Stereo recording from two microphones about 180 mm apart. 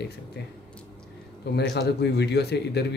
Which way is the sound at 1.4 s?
70° left (ahead or behind).